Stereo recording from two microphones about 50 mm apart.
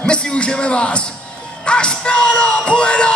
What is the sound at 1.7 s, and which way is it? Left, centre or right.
Speech, left.